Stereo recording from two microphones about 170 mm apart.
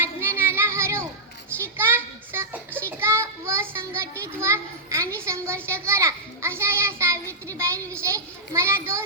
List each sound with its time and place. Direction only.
0.0 s child singing: 15° right (ahead or behind)
1.6 s a sound: 15° right (ahead or behind)
5.6 s child singing: 15° right (ahead or behind)